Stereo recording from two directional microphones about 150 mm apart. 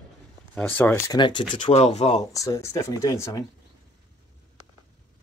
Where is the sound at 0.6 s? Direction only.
10° left (ahead or behind).